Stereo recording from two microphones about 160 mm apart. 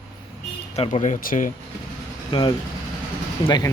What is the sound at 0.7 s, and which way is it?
Speech, 45° left (ahead or behind).